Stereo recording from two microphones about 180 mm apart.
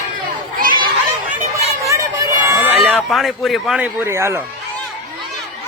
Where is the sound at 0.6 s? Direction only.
50° right (ahead or behind).